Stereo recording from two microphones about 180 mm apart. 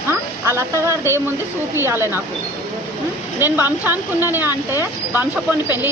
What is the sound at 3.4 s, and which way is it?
Speech, 10° right (ahead or behind).